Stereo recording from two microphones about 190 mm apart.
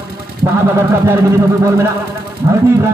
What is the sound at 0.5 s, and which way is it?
Speech, 10° right (ahead or behind).